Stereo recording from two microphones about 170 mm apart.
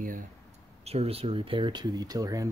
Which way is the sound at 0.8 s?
35° right (ahead or behind).